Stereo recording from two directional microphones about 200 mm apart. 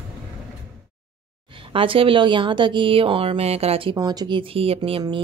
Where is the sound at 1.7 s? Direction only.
25° right (ahead or behind).